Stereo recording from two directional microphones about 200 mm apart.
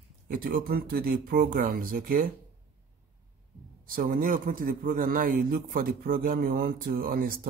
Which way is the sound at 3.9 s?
45° right (ahead or behind).